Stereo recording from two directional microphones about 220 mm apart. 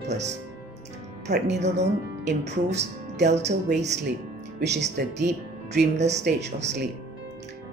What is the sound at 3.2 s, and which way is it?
Speech, 30° right (ahead or behind).